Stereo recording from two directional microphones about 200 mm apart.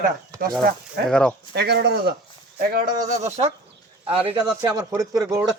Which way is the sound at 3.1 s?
35° right (ahead or behind).